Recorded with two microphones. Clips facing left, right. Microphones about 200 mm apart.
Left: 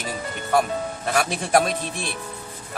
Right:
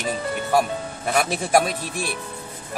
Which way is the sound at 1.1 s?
5° right (ahead or behind).